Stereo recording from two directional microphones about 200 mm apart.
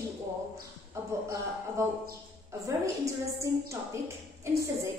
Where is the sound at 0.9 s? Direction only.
15° right (ahead or behind).